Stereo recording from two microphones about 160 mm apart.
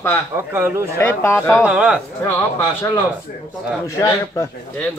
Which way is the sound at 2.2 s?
15° left (ahead or behind).